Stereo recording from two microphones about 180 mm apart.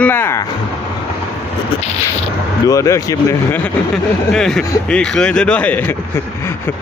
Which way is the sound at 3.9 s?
5° left (ahead or behind).